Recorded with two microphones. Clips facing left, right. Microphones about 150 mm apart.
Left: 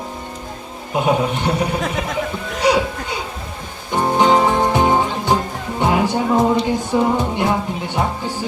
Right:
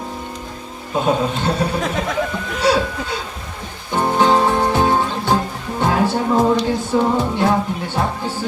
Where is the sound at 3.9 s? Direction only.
15° left (ahead or behind).